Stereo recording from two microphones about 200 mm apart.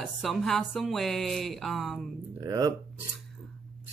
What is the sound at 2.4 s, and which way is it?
Speech, 20° right (ahead or behind).